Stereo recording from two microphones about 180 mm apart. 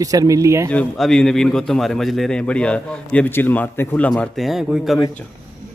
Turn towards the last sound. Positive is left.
turn(degrees=0)  # may be behind; listen again after turning